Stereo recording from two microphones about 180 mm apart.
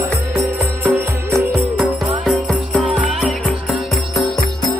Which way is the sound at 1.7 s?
Centre (ahead or behind).